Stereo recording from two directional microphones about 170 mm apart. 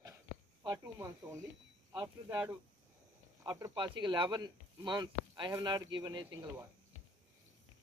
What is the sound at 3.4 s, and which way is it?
Speech, 25° right (ahead or behind).